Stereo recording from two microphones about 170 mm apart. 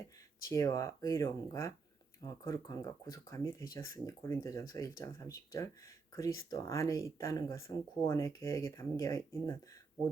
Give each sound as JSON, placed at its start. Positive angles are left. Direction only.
{"t": 0.4, "sound": "speech", "side_deg": 20}